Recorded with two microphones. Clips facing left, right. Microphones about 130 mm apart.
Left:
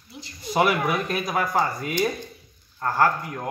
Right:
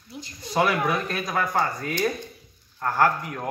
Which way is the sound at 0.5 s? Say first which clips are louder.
Left 1 dB; 20° left (ahead or behind).